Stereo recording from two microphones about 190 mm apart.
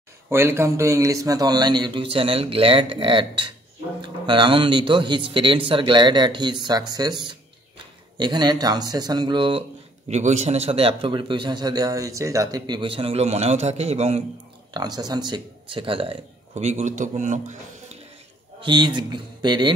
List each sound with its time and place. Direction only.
0.3 s speech: 15° right (ahead or behind)
8.2 s speech: 20° right (ahead or behind)
14.7 s speech: 20° right (ahead or behind); by 18.0 s 35° right (ahead or behind)
18.6 s speech: 25° right (ahead or behind)